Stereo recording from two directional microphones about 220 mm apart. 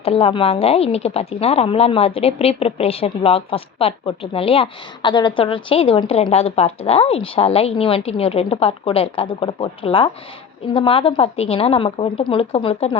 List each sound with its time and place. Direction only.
0.0 s speech: 25° left (ahead or behind)